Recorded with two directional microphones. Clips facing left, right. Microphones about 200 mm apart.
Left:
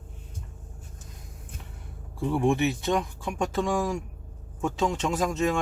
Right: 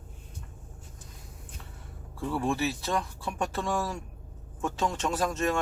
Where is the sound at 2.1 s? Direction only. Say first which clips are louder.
Left 5 dB; 15° left (ahead or behind).